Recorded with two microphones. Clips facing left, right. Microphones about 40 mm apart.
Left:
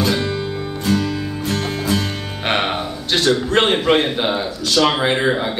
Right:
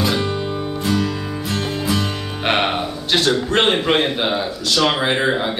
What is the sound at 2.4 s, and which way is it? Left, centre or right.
A man's voice, centre.